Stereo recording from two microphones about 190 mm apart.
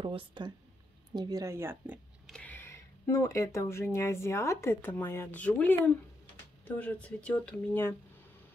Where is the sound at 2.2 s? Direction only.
5° left (ahead or behind).